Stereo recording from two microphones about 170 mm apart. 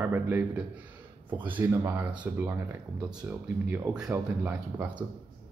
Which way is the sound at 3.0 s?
25° right (ahead or behind).